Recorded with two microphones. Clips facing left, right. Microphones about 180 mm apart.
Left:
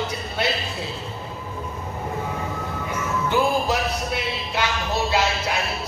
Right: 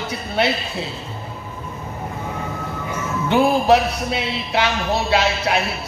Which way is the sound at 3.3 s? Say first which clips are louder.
Right 7 dB; 65° right (ahead or behind).